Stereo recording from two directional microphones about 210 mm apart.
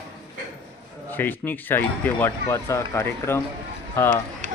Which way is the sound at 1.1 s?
10° left (ahead or behind).